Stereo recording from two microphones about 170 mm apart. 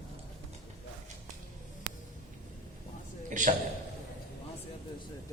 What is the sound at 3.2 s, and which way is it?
Speech, 45° right (ahead or behind).